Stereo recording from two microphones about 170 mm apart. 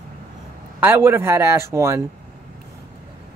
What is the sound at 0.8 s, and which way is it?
Speech, 15° right (ahead or behind).